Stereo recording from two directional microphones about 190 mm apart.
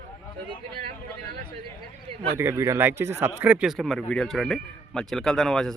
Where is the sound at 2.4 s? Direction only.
15° right (ahead or behind).